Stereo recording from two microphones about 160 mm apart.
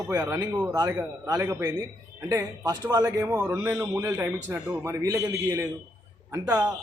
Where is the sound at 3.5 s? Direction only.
10° right (ahead or behind).